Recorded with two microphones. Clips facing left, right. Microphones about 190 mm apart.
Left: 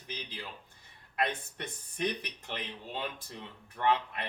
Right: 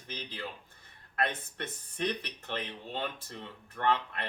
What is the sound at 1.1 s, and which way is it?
Speech, 15° left (ahead or behind).